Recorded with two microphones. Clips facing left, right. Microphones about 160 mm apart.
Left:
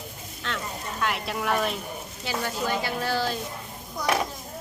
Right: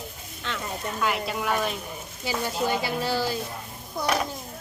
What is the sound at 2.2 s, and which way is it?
Speech, 15° right (ahead or behind).